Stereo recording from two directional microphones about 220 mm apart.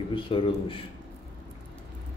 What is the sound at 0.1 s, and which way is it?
Speech, 25° left (ahead or behind).